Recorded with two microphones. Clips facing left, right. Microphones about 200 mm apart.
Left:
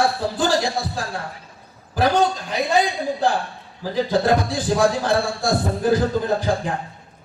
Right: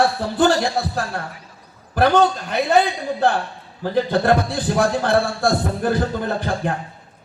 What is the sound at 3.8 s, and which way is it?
A man's voice, 60° right (ahead or behind).